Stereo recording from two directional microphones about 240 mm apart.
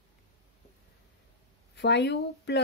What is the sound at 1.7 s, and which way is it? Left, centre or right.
Speech, left.